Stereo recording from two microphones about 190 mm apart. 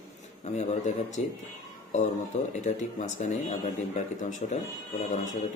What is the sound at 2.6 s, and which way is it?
A man's voice, 40° left (ahead or behind).